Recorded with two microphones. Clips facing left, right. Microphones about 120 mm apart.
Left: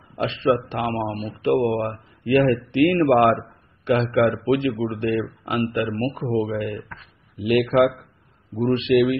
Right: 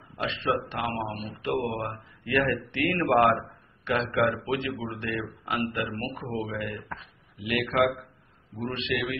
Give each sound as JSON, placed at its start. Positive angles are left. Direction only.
{"t": 0.2, "sound": "a man's voice", "side_deg": 30}